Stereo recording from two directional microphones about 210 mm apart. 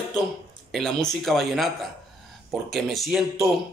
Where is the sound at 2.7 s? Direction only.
Centre (ahead or behind).